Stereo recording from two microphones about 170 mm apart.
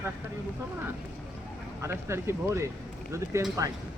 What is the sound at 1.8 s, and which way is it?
Speech, 15° right (ahead or behind).